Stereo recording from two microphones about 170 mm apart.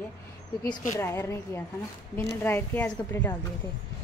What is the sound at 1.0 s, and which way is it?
A woman's voice, 15° left (ahead or behind).